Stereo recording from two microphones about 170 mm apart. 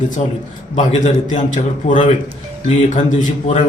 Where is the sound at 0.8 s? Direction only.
45° left (ahead or behind).